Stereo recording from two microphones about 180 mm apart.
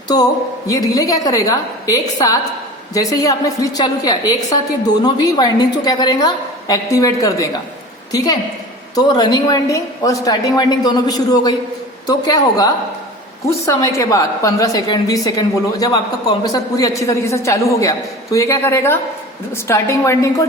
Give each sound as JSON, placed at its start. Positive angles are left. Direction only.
{"t": 0.1, "sound": "a woman's voice", "side_deg": 20}